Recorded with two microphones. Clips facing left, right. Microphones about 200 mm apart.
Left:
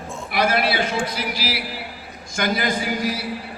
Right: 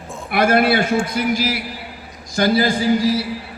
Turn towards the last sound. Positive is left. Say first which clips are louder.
# right 7 dB
turn(degrees=-30)  # may be behind; listen again after turning